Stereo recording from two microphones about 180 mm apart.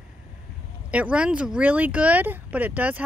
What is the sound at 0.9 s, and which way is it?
Speech, 5° right (ahead or behind).